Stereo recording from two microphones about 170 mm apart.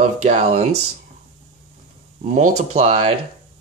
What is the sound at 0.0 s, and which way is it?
Speech, 40° right (ahead or behind).